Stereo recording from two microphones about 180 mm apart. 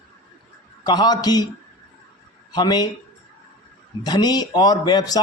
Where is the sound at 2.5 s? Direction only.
20° left (ahead or behind).